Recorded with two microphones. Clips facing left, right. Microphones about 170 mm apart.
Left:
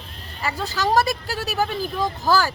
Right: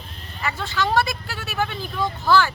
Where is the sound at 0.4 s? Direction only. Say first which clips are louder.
Left 1 dB; 40° left (ahead or behind).